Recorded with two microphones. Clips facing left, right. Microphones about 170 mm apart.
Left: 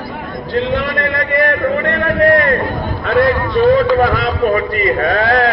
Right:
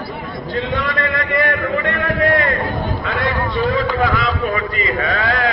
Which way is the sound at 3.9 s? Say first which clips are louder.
Left 5 dB; 50° left (ahead or behind).